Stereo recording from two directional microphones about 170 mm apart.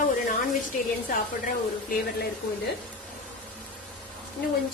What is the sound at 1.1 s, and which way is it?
Speech, 60° left (ahead or behind).